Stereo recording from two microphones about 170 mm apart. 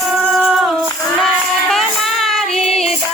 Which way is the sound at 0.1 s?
Centre (ahead or behind).